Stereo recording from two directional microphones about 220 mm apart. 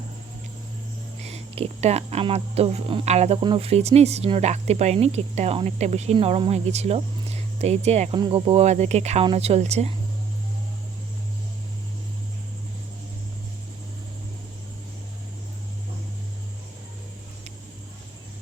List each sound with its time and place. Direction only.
1.2 s speech: 30° right (ahead or behind)